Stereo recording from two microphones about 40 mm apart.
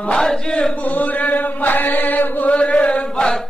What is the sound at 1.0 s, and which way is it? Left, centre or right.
Chant, left.